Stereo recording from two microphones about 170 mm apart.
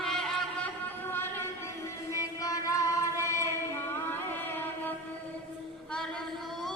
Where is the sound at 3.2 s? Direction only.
15° left (ahead or behind).